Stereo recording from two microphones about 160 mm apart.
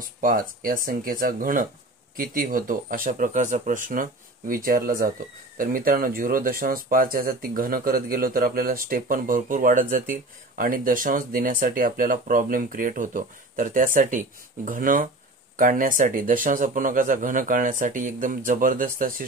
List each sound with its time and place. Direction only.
0.2 s speech: 60° right (ahead or behind)